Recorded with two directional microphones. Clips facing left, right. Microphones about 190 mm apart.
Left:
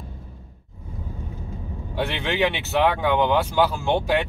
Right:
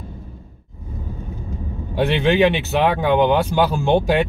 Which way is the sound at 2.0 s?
20° right (ahead or behind).